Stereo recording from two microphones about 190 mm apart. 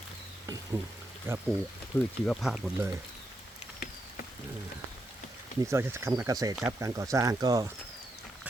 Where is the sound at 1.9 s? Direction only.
15° left (ahead or behind).